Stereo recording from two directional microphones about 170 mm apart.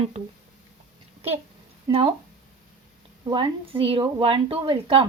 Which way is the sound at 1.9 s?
35° right (ahead or behind).